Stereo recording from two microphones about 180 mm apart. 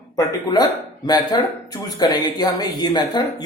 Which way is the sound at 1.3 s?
20° left (ahead or behind).